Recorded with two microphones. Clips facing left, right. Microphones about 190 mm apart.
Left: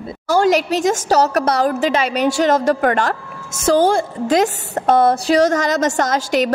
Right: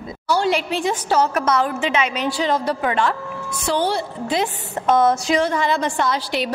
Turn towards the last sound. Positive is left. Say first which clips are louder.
# left 5 dB
turn(degrees=45)  # may be behind; listen again after turning